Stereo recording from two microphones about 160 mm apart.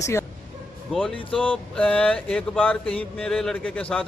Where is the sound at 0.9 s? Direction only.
5° left (ahead or behind).